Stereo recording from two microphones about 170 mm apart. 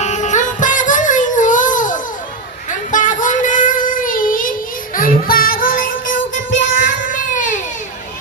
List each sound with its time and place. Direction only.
0.0 s music: 45° left (ahead or behind)
2.6 s child singing: 50° left (ahead or behind)
4.9 s music: 55° left (ahead or behind)